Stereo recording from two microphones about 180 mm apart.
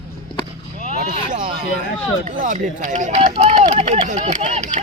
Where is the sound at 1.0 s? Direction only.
45° right (ahead or behind).